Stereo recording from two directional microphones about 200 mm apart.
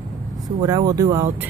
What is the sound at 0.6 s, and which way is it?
Speech, 20° right (ahead or behind).